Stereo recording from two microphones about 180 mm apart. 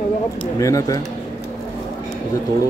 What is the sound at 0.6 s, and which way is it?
Speech, 20° left (ahead or behind).